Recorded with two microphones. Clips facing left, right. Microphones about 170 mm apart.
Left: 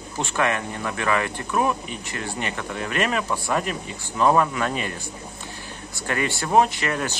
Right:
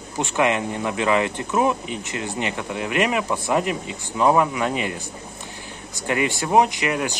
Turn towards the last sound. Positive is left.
turn(degrees=-15)  # may be behind; listen again after turning